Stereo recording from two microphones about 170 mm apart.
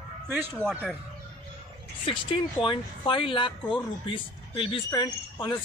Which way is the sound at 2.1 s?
30° left (ahead or behind).